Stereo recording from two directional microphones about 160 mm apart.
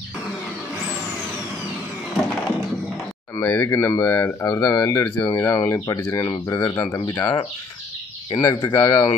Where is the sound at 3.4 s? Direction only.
15° left (ahead or behind).